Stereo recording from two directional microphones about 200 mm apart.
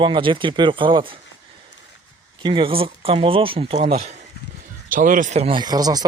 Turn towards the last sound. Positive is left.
turn(degrees=-20)  # may be behind; listen again after turning